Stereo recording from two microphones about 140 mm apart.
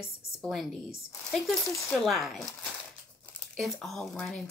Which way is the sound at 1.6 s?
20° left (ahead or behind).